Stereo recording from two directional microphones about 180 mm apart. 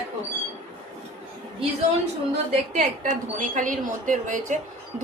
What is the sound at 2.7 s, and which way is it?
A woman's voice, 45° right (ahead or behind).